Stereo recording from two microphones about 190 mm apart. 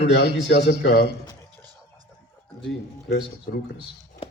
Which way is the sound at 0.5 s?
55° left (ahead or behind).